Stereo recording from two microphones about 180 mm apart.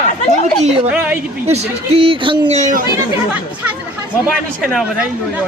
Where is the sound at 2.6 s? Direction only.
45° right (ahead or behind).